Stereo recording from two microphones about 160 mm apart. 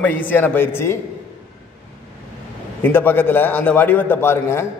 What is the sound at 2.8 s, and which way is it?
A man's voice, 15° left (ahead or behind).